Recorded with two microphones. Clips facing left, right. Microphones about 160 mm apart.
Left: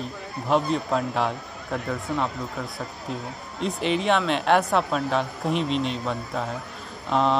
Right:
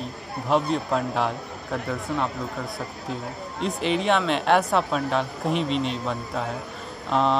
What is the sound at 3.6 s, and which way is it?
Speech, centre (ahead or behind).